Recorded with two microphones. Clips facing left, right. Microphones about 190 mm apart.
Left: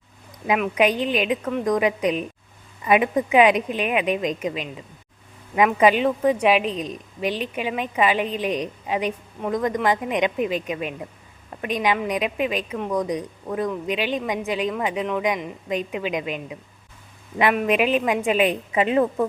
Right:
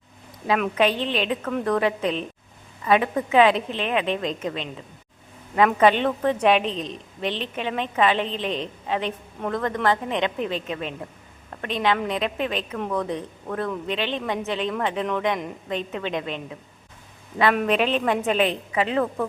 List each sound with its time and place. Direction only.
0.8 s a woman's voice: 10° left (ahead or behind)